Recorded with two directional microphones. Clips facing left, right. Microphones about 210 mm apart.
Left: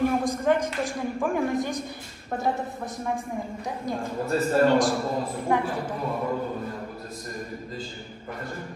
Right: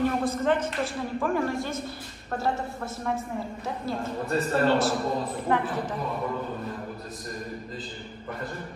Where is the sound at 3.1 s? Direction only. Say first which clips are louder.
Left 1 dB; 15° left (ahead or behind).